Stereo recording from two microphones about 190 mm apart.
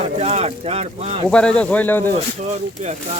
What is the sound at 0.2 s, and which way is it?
Speech, 35° right (ahead or behind).